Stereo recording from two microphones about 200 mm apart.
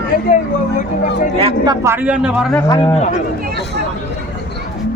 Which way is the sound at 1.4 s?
25° right (ahead or behind).